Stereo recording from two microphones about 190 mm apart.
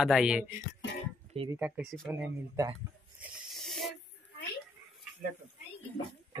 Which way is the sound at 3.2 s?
Centre (ahead or behind).